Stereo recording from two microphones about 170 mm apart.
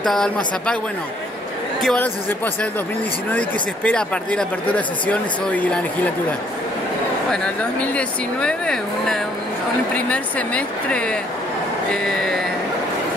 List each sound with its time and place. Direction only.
0.0 s speech: 5° left (ahead or behind)
1.8 s speech: 5° left (ahead or behind)
7.2 s speech: 5° left (ahead or behind)